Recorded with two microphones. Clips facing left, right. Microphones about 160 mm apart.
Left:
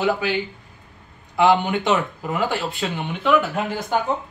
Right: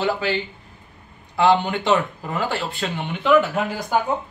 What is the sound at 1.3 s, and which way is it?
Speech, 15° left (ahead or behind).